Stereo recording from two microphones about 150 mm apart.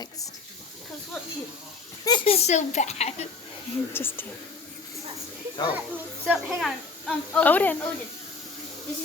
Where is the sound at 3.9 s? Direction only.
15° left (ahead or behind).